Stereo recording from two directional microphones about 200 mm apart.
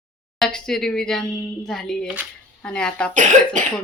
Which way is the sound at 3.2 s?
40° right (ahead or behind).